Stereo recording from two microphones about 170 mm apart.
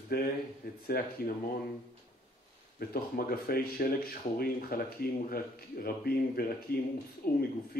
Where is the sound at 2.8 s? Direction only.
60° left (ahead or behind).